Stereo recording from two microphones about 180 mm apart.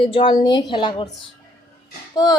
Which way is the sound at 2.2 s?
20° left (ahead or behind).